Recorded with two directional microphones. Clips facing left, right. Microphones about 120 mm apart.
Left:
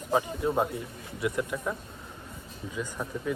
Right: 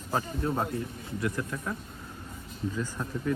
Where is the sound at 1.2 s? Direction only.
20° left (ahead or behind).